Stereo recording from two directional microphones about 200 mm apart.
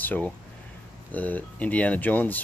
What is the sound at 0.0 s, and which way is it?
Speech, 10° left (ahead or behind).